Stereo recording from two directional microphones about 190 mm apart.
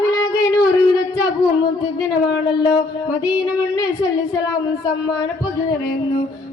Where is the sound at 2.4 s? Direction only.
25° left (ahead or behind).